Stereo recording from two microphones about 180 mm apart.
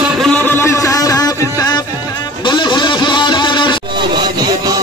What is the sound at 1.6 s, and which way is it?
Music, 20° left (ahead or behind).